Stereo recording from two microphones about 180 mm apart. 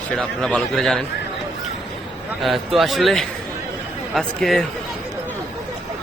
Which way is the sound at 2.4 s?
Centre (ahead or behind).